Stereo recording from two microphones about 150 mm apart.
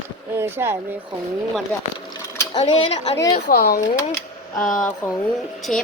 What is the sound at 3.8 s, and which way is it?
Speech, 25° left (ahead or behind).